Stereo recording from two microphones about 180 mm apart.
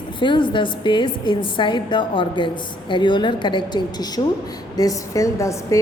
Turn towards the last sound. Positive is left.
turn(degrees=15)  # may be behind; listen again after turning